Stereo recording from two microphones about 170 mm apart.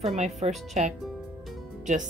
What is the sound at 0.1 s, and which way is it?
Speech, 40° right (ahead or behind).